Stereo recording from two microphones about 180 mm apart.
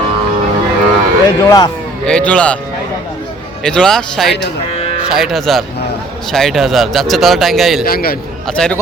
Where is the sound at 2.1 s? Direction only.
5° left (ahead or behind).